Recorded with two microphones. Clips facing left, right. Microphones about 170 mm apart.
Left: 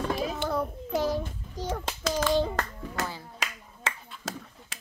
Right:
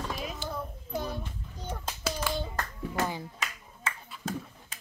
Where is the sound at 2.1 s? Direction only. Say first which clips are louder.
Left 11 dB; 90° left.